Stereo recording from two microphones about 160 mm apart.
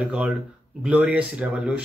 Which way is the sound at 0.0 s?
10° right (ahead or behind).